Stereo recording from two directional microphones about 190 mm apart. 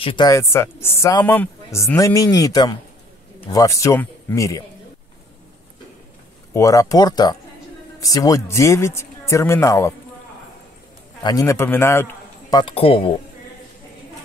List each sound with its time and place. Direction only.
0.0 s speech: 25° left (ahead or behind)
6.5 s speech: 15° left (ahead or behind)
11.2 s a man's voice: 15° left (ahead or behind)